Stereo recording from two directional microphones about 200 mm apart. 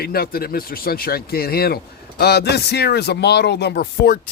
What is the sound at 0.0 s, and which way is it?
Speech, 50° left (ahead or behind).